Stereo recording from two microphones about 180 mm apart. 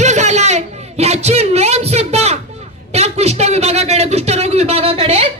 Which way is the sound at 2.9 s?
35° right (ahead or behind).